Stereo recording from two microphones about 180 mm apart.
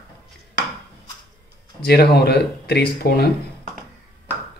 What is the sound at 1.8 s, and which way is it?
Speech, 60° left (ahead or behind).